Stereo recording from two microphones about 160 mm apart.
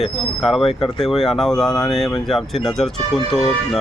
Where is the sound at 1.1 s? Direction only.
Centre (ahead or behind).